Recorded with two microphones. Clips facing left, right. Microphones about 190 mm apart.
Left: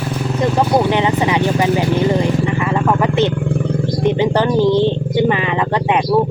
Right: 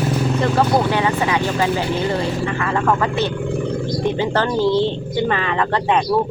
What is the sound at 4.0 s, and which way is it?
Speech, 20° left (ahead or behind).